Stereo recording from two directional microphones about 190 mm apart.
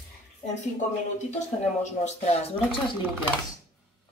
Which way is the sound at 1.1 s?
35° left (ahead or behind).